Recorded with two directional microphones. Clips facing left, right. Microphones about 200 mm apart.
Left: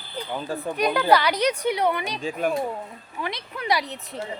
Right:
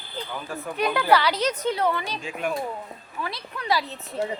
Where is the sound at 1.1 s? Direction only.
15° left (ahead or behind).